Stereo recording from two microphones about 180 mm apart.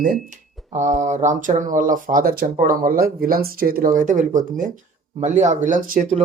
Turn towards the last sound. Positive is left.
turn(degrees=-50)  # may be behind; listen again after turning